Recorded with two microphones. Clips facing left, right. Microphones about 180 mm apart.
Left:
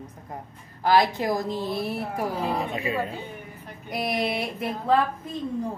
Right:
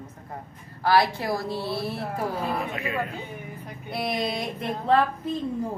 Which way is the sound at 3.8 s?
15° left (ahead or behind).